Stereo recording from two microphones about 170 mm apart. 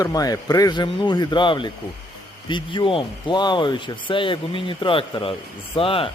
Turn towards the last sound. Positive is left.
turn(degrees=35)  # may be behind; listen again after turning